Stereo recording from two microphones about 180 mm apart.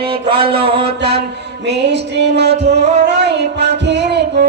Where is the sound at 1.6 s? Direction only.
70° right (ahead or behind).